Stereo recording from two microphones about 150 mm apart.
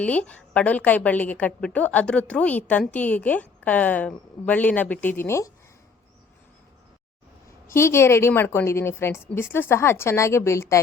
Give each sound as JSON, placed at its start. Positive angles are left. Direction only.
{"t": 0.0, "sound": "a woman's voice", "side_deg": 10}
{"t": 7.7, "sound": "a woman's voice", "side_deg": 15}